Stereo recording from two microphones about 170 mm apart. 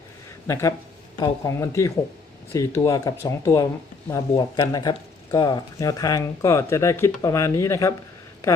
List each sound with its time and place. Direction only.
0.4 s a man's voice: 15° left (ahead or behind)